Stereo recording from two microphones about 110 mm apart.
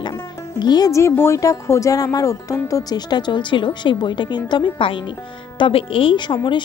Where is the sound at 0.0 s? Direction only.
35° left (ahead or behind).